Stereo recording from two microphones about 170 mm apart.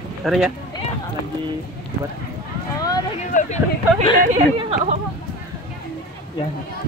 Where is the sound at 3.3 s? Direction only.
45° left (ahead or behind).